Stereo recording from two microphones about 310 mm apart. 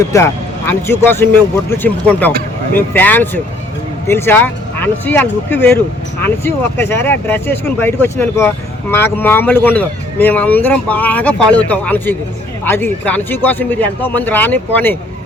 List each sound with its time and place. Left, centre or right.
0.1 s speech: centre